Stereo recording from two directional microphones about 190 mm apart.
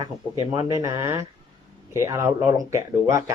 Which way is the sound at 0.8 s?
15° right (ahead or behind).